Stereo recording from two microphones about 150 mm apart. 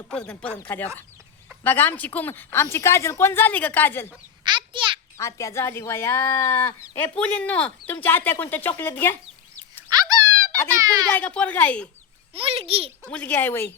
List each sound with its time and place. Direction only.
0.1 s speech: 5° left (ahead or behind)
4.4 s a sound: 30° right (ahead or behind)
5.1 s speech: 20° left (ahead or behind)
9.9 s wail: 25° right (ahead or behind)
10.8 s a child's voice: 25° right (ahead or behind)
11.1 s speech: 10° left (ahead or behind)
12.3 s a child's voice: 40° right (ahead or behind)
13.1 s speech: 10° left (ahead or behind)